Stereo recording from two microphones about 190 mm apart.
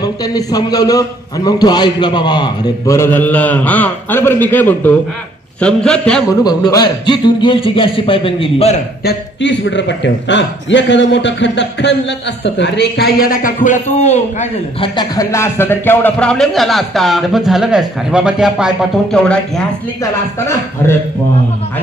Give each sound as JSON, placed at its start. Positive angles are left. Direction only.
{"t": 0.0, "sound": "a man's voice", "side_deg": 20}
{"t": 6.4, "sound": "a man's voice", "side_deg": 20}
{"t": 9.0, "sound": "a man's voice", "side_deg": 70}
{"t": 15.0, "sound": "a man's voice", "side_deg": 15}